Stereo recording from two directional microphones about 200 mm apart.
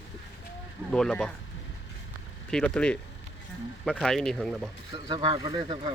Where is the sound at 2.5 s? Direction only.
5° left (ahead or behind).